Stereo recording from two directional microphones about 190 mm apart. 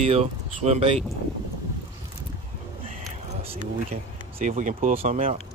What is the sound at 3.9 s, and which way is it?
Speech, 40° right (ahead or behind).